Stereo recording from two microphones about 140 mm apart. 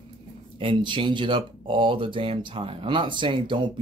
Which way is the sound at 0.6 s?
35° right (ahead or behind).